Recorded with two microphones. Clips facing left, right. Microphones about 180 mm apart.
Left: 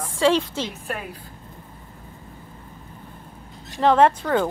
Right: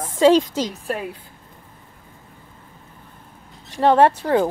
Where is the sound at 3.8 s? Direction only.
30° right (ahead or behind).